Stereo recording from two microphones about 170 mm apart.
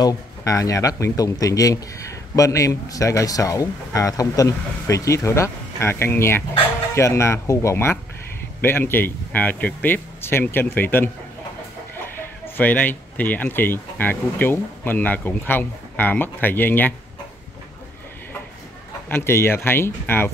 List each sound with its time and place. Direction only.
0.0 s speech: 20° left (ahead or behind)
12.5 s speech: 10° left (ahead or behind)
19.0 s speech: 15° left (ahead or behind)